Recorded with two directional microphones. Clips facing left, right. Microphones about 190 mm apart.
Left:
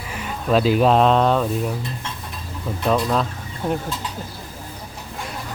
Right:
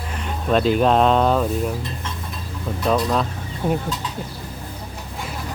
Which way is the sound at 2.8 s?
Centre (ahead or behind).